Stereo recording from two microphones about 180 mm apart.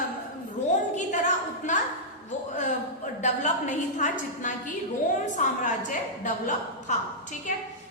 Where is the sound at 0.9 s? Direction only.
40° left (ahead or behind).